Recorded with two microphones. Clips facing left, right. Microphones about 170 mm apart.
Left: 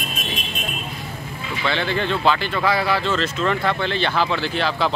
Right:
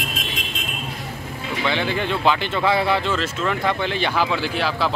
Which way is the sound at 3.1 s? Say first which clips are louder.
Left 2 dB; 5° right (ahead or behind).